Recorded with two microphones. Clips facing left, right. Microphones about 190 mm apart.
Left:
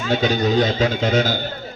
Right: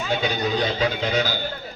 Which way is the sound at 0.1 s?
45° left (ahead or behind).